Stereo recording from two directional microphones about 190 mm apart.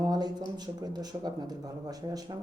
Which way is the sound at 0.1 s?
20° right (ahead or behind).